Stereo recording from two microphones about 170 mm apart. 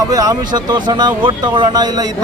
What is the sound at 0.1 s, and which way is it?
A man's voice, 20° right (ahead or behind).